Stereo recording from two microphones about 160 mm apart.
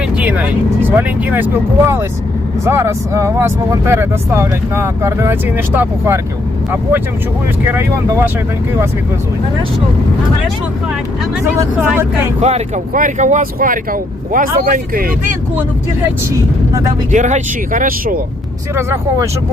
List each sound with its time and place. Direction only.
0.2 s speech: 10° right (ahead or behind)
7.7 s speech: 15° right (ahead or behind)
11.5 s speech: 20° right (ahead or behind)
12.4 s speech: 45° right (ahead or behind); by 15.0 s 60° right (ahead or behind)
17.1 s speech: 50° right (ahead or behind)